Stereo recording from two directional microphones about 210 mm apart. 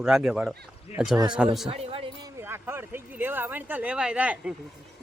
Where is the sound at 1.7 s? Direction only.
25° right (ahead or behind).